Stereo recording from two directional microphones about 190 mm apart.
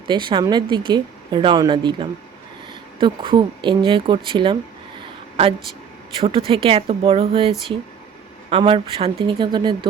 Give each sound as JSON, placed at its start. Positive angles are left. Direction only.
{"t": 0.1, "sound": "a woman's voice", "side_deg": -25}
{"t": 6.1, "sound": "a woman's voice", "side_deg": -30}